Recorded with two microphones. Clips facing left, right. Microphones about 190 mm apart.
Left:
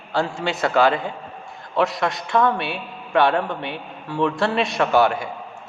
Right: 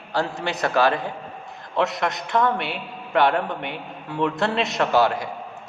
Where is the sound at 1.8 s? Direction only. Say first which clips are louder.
Left 2 dB; 20° right (ahead or behind).